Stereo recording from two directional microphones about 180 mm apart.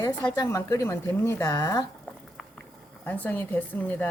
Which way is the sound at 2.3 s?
5° left (ahead or behind).